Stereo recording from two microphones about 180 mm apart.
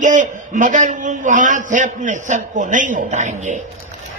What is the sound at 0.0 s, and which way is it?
A man's voice, 45° right (ahead or behind).